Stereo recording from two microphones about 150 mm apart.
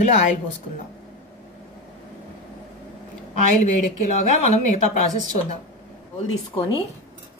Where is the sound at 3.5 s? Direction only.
50° left (ahead or behind).